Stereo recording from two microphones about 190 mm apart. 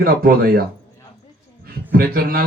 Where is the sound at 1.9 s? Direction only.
50° right (ahead or behind).